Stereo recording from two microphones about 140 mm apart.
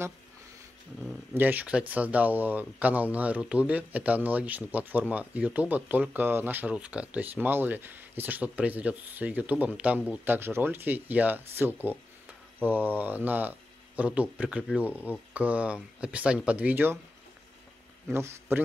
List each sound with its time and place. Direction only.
1.3 s speech: 15° right (ahead or behind)
18.0 s a man's voice: 20° right (ahead or behind)